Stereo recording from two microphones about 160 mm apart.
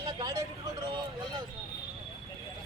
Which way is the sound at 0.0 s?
25° right (ahead or behind).